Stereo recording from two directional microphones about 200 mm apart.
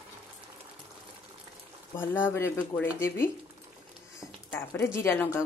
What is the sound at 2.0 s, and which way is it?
Speech, 10° left (ahead or behind).